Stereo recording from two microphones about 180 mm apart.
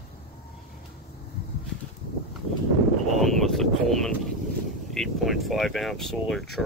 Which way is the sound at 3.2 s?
Centre (ahead or behind).